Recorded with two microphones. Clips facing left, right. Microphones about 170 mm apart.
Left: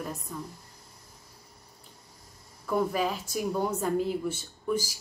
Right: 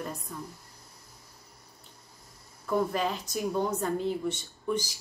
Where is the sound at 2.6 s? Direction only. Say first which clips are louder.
Left 1 dB; 5° left (ahead or behind).